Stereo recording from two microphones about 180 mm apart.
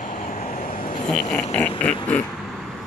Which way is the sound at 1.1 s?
5° left (ahead or behind).